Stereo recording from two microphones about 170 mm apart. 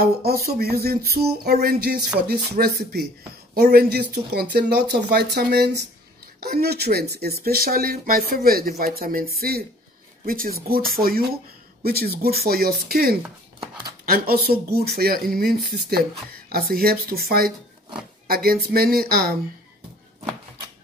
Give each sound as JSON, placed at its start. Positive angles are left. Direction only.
{"t": 0.0, "sound": "speech", "side_deg": -65}